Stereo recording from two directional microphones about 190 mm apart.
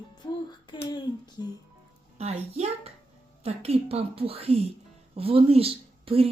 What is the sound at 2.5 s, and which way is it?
Speech, 35° right (ahead or behind).